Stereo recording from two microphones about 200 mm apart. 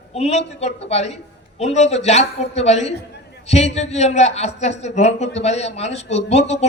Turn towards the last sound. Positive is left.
turn(degrees=35)  # may be behind; listen again after turning